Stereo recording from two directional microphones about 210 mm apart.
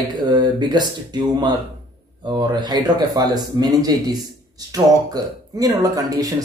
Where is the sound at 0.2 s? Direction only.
20° right (ahead or behind).